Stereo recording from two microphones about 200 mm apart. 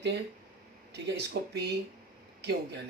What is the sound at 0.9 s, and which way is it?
Speech, 55° right (ahead or behind).